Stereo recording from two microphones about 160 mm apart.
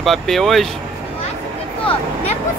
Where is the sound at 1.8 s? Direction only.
40° left (ahead or behind).